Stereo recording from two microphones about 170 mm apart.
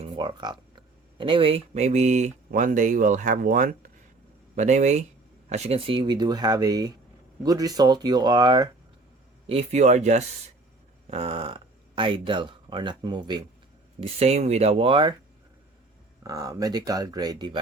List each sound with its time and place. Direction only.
0.0 s speech: 30° right (ahead or behind)
9.5 s speech: 40° right (ahead or behind)
14.0 s speech: 40° right (ahead or behind)
16.2 s speech: 20° right (ahead or behind)